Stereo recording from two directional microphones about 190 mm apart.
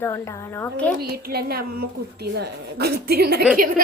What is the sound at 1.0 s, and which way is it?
A woman's voice, 55° right (ahead or behind).